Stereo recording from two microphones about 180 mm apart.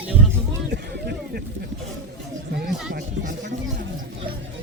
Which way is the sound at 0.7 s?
60° right (ahead or behind).